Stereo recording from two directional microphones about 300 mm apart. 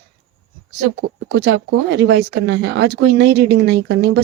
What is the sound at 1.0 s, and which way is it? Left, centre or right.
Speech, right.